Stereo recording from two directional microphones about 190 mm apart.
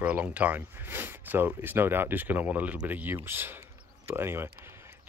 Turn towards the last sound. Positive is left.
turn(degrees=-10)  # may be behind; listen again after turning